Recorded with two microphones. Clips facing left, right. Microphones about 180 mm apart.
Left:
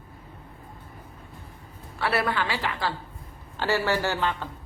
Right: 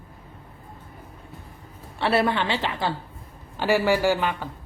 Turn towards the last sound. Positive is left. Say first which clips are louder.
# right 4 dB
turn(degrees=-15)  # may be behind; listen again after turning